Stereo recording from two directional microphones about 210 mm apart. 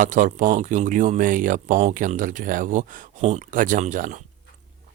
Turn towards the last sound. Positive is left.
turn(degrees=-40)  # may be behind; listen again after turning